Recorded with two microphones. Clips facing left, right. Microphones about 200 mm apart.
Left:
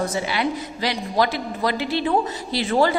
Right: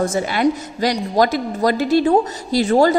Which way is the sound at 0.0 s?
50° right (ahead or behind).